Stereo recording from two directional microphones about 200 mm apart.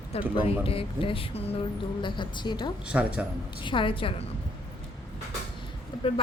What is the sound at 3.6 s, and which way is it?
Speech, 25° left (ahead or behind).